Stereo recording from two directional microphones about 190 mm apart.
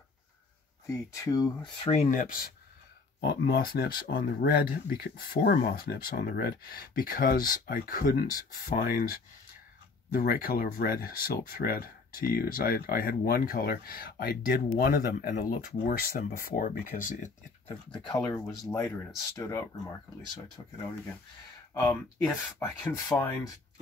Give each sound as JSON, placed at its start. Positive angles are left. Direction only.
{"t": 0.8, "sound": "speech", "side_deg": 15}
{"t": 1.9, "sound": "speech", "side_deg": 40}
{"t": 3.2, "sound": "speech", "side_deg": 60}
{"t": 10.1, "sound": "speech", "side_deg": 50}
{"t": 17.9, "sound": "speech", "side_deg": 15}
{"t": 21.8, "sound": "speech", "side_deg": 5}